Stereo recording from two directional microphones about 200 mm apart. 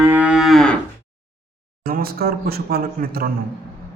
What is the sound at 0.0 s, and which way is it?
Cattle, 10° right (ahead or behind).